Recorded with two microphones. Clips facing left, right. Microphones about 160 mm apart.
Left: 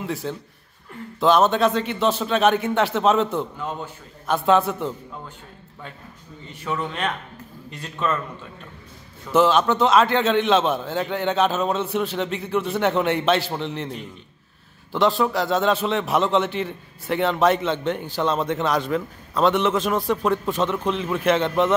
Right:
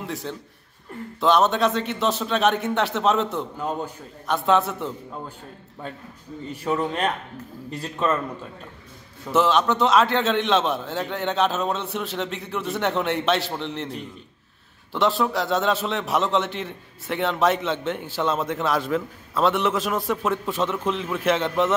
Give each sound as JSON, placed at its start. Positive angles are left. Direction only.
{"t": 0.0, "sound": "a man's voice", "side_deg": 5}
{"t": 6.5, "sound": "a man's voice", "side_deg": -35}
{"t": 9.3, "sound": "a man's voice", "side_deg": 0}
{"t": 14.9, "sound": "a man's voice", "side_deg": 0}